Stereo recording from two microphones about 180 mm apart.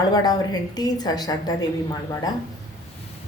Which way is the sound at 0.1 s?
20° left (ahead or behind).